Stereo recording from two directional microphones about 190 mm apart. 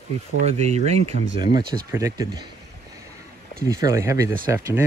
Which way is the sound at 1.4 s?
20° right (ahead or behind).